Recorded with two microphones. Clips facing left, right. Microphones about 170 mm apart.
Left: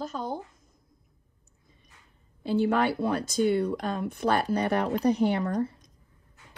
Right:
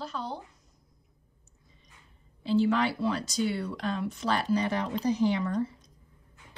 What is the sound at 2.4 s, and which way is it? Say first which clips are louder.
Speech: left 1 dB; 55° left (ahead or behind).